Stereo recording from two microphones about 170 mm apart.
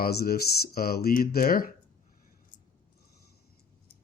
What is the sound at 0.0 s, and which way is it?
Speech, 65° left (ahead or behind).